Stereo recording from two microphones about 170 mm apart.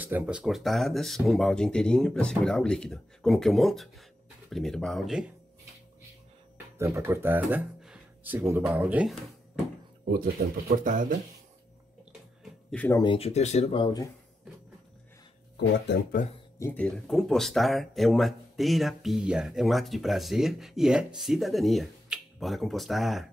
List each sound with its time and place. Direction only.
0.0 s speech: 10° right (ahead or behind)
6.8 s speech: 15° right (ahead or behind)
10.0 s speech: 65° right (ahead or behind)
10.8 s speech: 50° right (ahead or behind)
12.7 s speech: 10° left (ahead or behind)
13.0 s speech: 35° left (ahead or behind)
15.5 s speech: 80° left
16.5 s speech: 10° left (ahead or behind)